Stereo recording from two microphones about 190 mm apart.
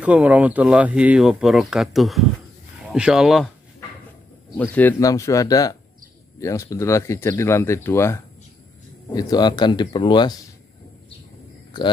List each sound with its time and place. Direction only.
0.0 s speech: 5° right (ahead or behind)
4.6 s speech: 10° left (ahead or behind)